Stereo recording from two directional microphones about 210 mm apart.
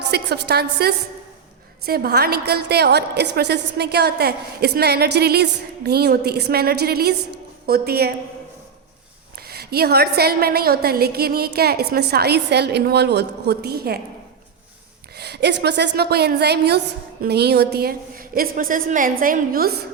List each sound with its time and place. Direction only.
0.1 s a woman's voice: 50° right (ahead or behind)
9.5 s a woman's voice: 50° right (ahead or behind)
15.1 s a woman's voice: 50° right (ahead or behind)